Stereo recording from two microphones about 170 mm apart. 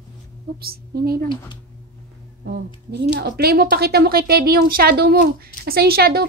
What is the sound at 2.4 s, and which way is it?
Speech, 75° right (ahead or behind).